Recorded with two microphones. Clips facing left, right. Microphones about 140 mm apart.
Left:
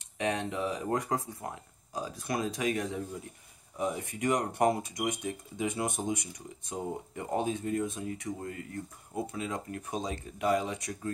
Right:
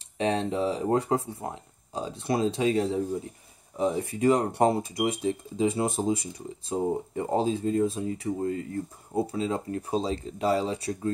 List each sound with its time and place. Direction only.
0.2 s speech: 30° right (ahead or behind)